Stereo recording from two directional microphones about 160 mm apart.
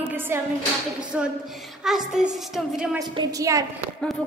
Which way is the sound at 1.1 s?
5° right (ahead or behind).